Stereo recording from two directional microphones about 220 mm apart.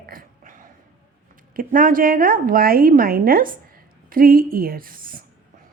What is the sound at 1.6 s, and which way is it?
A woman's voice, 40° right (ahead or behind).